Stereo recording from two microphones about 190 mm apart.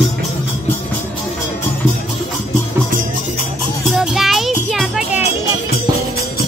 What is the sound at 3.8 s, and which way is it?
Music, 5° right (ahead or behind).